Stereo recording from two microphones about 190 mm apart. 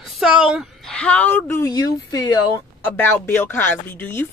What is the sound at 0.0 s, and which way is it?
A woman's voice, 5° right (ahead or behind).